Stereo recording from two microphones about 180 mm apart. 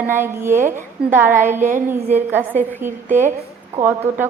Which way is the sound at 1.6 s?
45° right (ahead or behind).